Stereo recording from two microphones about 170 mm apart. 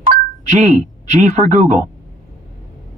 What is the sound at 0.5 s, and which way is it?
Speech, 45° right (ahead or behind).